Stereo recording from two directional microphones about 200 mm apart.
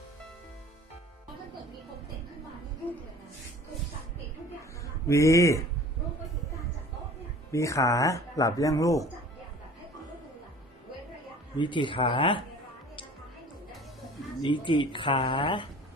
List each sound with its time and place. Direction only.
5.0 s speech: 15° left (ahead or behind)
7.5 s speech: 15° left (ahead or behind)
11.5 s speech: 25° left (ahead or behind)
14.4 s speech: 25° left (ahead or behind)